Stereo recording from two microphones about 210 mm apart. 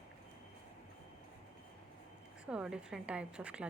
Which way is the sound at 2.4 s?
5° right (ahead or behind).